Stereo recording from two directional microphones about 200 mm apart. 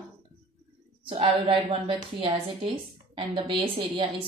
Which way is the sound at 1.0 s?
25° right (ahead or behind).